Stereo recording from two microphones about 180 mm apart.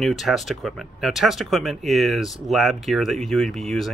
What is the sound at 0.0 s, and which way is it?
Speech, centre (ahead or behind).